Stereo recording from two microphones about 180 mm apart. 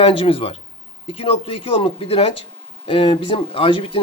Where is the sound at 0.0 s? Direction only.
30° left (ahead or behind).